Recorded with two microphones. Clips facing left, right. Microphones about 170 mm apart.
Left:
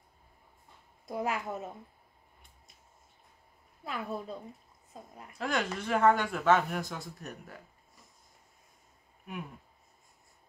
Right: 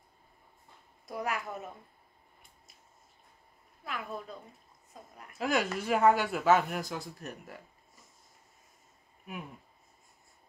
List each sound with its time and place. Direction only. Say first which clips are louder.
1.0 s a woman's voice: left 2 dB; 25° left (ahead or behind)
3.8 s a woman's voice: left 3 dB; 30° left (ahead or behind)
5.4 s speech: right 2 dB; 5° right (ahead or behind)